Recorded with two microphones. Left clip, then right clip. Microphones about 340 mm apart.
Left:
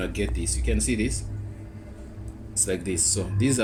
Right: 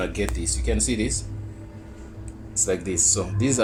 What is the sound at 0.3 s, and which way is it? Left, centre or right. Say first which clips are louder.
Speech: right 3 dB; centre.